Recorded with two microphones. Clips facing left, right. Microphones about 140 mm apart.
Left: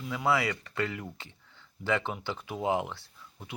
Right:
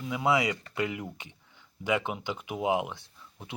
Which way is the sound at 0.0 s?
20° right (ahead or behind).